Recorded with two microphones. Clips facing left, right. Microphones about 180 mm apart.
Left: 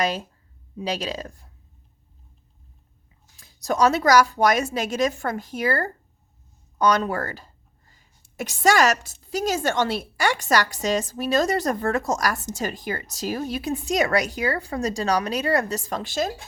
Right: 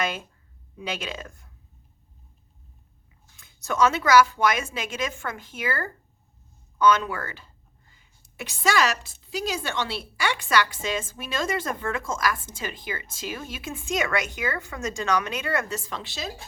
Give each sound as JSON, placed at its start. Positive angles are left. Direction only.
{"t": 0.0, "sound": "speech", "side_deg": 35}
{"t": 3.3, "sound": "speech", "side_deg": 35}